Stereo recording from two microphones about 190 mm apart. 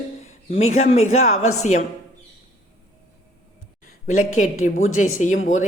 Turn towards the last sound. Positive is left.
turn(degrees=40)  # may be behind; listen again after turning